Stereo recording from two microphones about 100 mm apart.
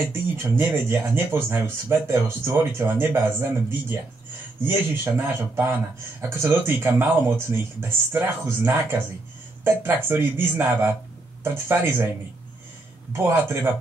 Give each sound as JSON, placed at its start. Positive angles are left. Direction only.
{"t": 0.1, "sound": "speech", "side_deg": -20}
{"t": 4.6, "sound": "speech", "side_deg": -25}
{"t": 13.1, "sound": "speech", "side_deg": -20}